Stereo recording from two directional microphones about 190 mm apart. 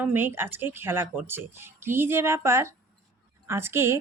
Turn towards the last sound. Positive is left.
turn(degrees=-10)  # may be behind; listen again after turning